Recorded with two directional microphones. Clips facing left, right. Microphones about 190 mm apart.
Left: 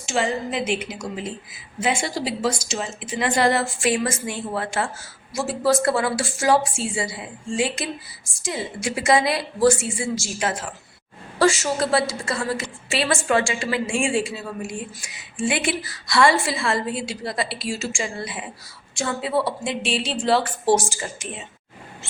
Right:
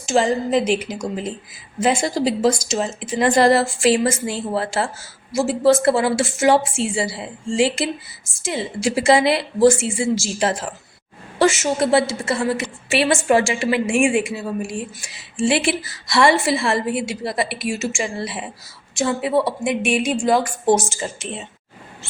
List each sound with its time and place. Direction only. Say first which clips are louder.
0.0 s a woman's voice: right 5 dB; 40° right (ahead or behind)
11.3 s a woman's voice: right 2 dB; 20° right (ahead or behind)